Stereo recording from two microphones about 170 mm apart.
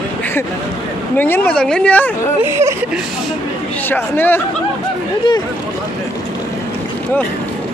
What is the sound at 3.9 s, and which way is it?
Speech, 10° left (ahead or behind).